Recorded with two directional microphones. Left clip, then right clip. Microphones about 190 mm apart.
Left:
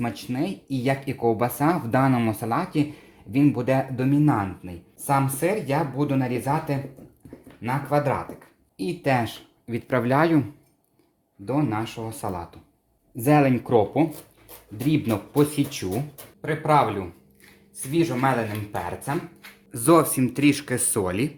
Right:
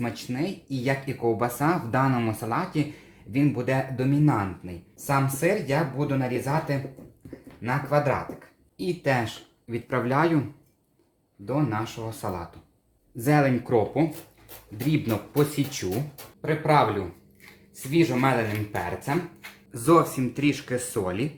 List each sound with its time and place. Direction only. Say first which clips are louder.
0.0 s speech: left 2 dB; 35° left (ahead or behind)
11.4 s speech: left 2 dB; 40° left (ahead or behind)
17.9 s speech: even; 20° left (ahead or behind)
19.7 s speech: left 2 dB; 50° left (ahead or behind)